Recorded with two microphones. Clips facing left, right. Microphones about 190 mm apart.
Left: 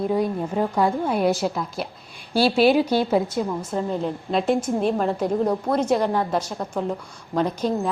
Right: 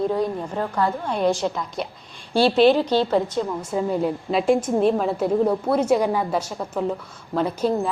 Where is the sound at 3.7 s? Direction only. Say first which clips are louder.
Right 5 dB; 5° right (ahead or behind).